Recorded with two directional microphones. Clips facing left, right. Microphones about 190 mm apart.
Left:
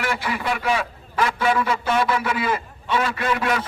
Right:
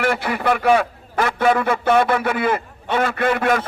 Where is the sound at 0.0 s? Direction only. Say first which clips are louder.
Right 5 dB; 55° right (ahead or behind).